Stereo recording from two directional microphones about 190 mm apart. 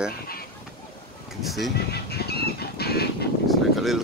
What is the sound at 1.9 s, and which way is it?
Fowl, 55° left (ahead or behind).